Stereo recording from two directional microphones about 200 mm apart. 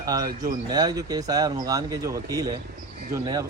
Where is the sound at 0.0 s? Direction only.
20° right (ahead or behind).